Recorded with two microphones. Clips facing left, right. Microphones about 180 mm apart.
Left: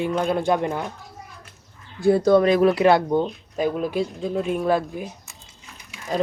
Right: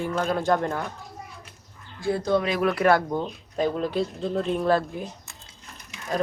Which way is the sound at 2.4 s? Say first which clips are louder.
Left 7 dB; 40° left (ahead or behind).